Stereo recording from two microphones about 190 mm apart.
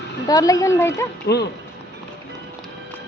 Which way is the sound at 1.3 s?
60° left (ahead or behind).